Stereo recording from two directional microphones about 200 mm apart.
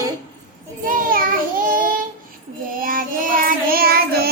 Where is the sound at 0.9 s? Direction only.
45° right (ahead or behind).